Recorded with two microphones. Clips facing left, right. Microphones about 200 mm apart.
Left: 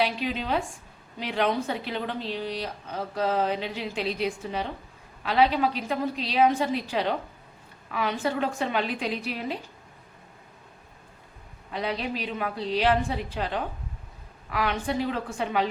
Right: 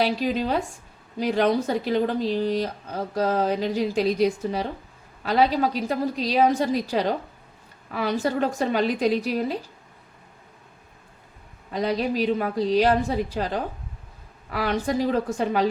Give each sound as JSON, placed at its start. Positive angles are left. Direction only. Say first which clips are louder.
{"t": 0.0, "sound": "speech", "louder": "right 4 dB", "side_deg": -40}
{"t": 11.7, "sound": "speech", "louder": "right 6 dB", "side_deg": -40}